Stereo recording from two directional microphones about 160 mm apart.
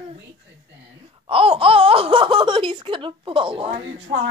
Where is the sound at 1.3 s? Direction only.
35° right (ahead or behind).